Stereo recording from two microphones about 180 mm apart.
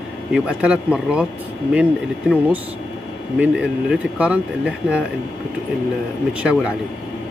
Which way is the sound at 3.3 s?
5° right (ahead or behind).